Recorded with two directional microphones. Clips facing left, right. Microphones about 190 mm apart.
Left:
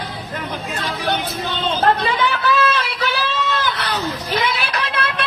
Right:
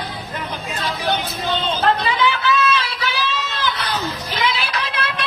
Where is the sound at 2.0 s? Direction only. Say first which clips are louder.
Even; 55° left (ahead or behind).